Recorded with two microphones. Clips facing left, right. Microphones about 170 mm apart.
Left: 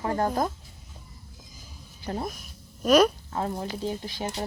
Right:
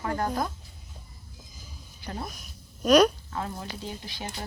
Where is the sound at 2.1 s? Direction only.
30° left (ahead or behind).